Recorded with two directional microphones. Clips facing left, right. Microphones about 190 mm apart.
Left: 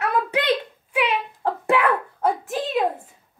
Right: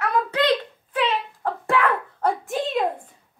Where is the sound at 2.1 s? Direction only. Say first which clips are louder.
Even; 5° left (ahead or behind).